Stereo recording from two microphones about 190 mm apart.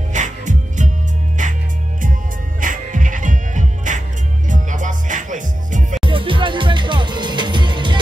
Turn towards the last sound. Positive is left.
turn(degrees=-25)  # may be behind; listen again after turning